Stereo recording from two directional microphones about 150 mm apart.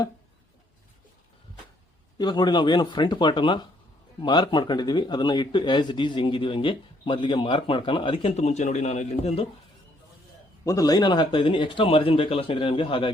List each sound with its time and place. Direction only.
2.1 s speech: 30° left (ahead or behind)
8.3 s a man's voice: 50° left (ahead or behind)
10.7 s speech: 25° left (ahead or behind)